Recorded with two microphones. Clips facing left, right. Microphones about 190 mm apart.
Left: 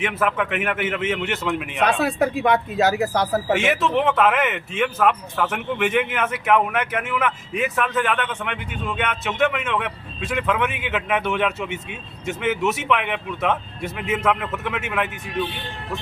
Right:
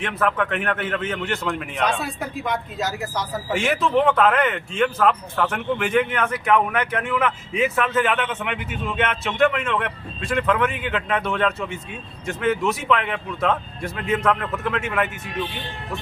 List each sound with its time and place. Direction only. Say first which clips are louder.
0.0 s a man's voice: even; 5° left (ahead or behind)
1.8 s a man's voice: left 6 dB; 65° left (ahead or behind)
3.6 s speech: right 1 dB; centre (ahead or behind)